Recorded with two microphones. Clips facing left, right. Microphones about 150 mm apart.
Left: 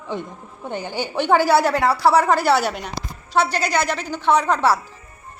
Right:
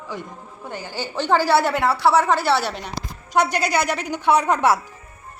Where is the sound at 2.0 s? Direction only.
10° left (ahead or behind).